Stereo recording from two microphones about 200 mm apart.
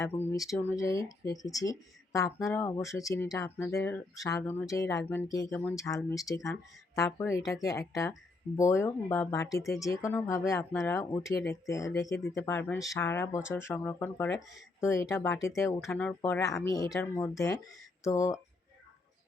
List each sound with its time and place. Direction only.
0.0 s speech: 10° left (ahead or behind)